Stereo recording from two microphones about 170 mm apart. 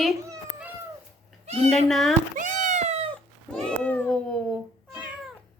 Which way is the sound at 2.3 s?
45° right (ahead or behind).